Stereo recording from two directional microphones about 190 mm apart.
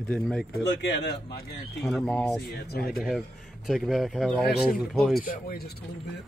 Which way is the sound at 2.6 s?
60° left (ahead or behind).